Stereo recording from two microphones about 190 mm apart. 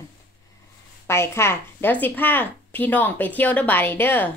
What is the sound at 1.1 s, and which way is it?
Speech, 15° left (ahead or behind).